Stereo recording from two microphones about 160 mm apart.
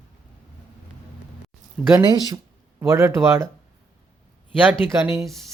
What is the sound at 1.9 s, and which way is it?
Speech, 25° right (ahead or behind).